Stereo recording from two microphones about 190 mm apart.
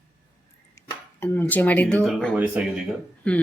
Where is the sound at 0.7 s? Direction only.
10° left (ahead or behind).